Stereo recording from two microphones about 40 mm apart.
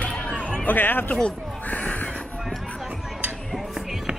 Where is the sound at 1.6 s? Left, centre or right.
Left.